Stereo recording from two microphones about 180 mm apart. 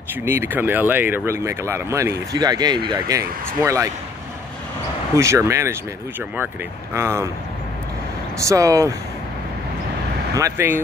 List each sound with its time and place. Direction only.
0.1 s speech: 15° right (ahead or behind)
5.1 s speech: 15° right (ahead or behind)
8.5 s speech: 20° right (ahead or behind)
10.3 s speech: 15° right (ahead or behind)